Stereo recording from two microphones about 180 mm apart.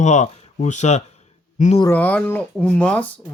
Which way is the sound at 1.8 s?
10° left (ahead or behind).